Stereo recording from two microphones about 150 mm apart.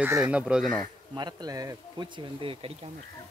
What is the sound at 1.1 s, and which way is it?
Speech, 25° right (ahead or behind).